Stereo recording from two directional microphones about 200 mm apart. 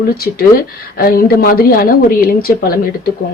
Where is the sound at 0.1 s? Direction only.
50° left (ahead or behind).